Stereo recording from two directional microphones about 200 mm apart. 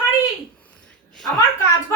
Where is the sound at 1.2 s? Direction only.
15° left (ahead or behind).